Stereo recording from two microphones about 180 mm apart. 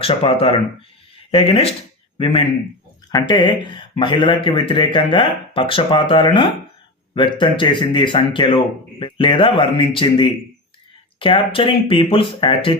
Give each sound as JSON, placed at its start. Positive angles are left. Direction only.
{"t": 0.0, "sound": "speech", "side_deg": 30}